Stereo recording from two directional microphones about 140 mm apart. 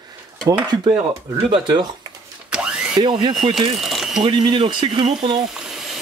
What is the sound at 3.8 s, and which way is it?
Ratchet, centre (ahead or behind).